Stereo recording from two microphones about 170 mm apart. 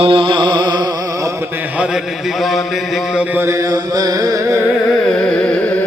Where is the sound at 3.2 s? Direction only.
15° right (ahead or behind).